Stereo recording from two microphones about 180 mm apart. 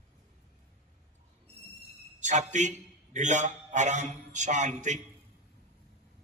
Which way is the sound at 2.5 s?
40° right (ahead or behind).